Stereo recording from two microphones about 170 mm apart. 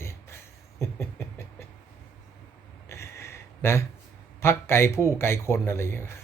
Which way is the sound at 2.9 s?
15° left (ahead or behind).